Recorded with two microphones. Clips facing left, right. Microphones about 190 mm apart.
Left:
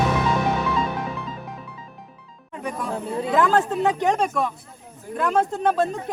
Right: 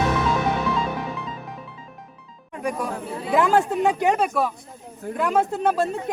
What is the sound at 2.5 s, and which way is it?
Speech, 10° right (ahead or behind).